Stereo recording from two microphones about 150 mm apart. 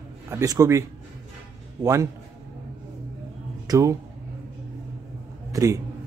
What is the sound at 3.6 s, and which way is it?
Speech, 20° right (ahead or behind).